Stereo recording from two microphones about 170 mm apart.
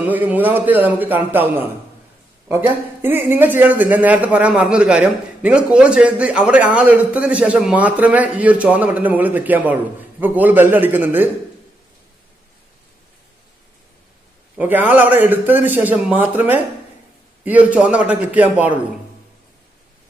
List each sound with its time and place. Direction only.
0.0 s speech: 10° right (ahead or behind)
14.6 s speech: 10° right (ahead or behind)